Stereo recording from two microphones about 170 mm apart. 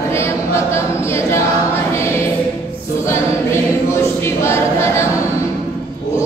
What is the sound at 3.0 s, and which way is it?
Choir, 15° left (ahead or behind).